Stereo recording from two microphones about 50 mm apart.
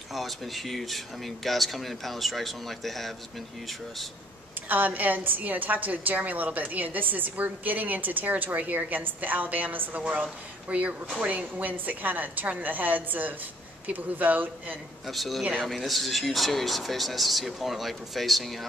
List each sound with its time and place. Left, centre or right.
0.1 s speech: centre
4.6 s a woman's voice: right
15.0 s speech: centre